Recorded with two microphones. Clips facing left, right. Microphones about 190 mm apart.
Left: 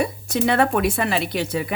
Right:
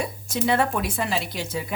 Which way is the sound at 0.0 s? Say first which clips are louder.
Left 5 dB; 65° left (ahead or behind).